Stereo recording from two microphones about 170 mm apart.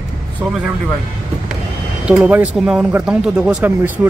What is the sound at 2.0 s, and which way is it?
Speech, 10° right (ahead or behind).